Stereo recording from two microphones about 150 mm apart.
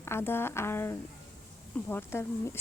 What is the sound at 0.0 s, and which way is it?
Speech, 15° left (ahead or behind).